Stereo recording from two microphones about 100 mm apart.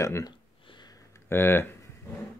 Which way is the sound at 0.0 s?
30° left (ahead or behind).